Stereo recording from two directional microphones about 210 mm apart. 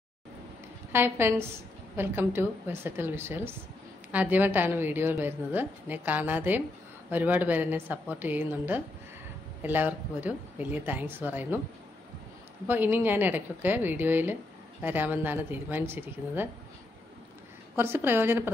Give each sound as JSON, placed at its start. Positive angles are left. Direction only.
{"t": 0.9, "sound": "a woman's voice", "side_deg": -10}
{"t": 12.6, "sound": "a woman's voice", "side_deg": -10}
{"t": 17.7, "sound": "a woman's voice", "side_deg": -10}